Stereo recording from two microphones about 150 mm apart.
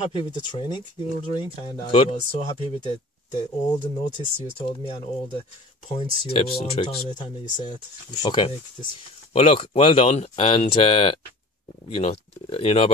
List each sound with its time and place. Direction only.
0.1 s speech: 35° left (ahead or behind); by 3.0 s 50° left (ahead or behind)
3.3 s speech: 25° left (ahead or behind)
4.6 s speech: 40° left (ahead or behind)
9.3 s speech: 45° left (ahead or behind)